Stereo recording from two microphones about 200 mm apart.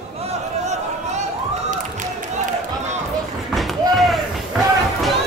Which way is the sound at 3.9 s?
Centre (ahead or behind).